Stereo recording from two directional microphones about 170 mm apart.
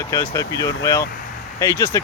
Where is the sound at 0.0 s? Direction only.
15° left (ahead or behind).